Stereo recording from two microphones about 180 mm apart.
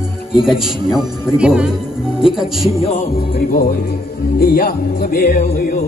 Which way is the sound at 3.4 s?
50° left (ahead or behind).